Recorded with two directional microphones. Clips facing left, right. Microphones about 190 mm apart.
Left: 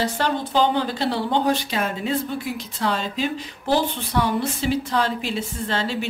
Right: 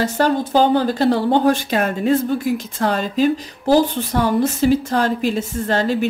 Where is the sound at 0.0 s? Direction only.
45° right (ahead or behind).